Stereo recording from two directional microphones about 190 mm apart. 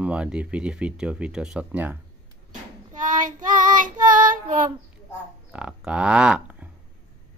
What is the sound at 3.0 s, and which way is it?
Child singing, 45° right (ahead or behind).